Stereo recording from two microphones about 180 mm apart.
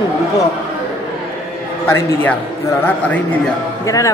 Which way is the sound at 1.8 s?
15° left (ahead or behind).